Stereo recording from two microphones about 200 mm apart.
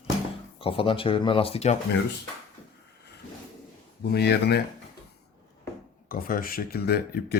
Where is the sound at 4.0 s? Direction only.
55° left (ahead or behind).